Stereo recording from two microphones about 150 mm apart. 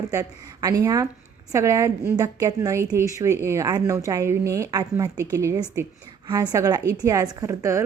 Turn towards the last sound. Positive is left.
turn(degrees=-20)  # may be behind; listen again after turning